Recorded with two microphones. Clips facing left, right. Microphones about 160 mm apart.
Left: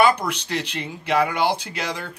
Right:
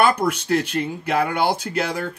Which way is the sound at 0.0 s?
50° right (ahead or behind).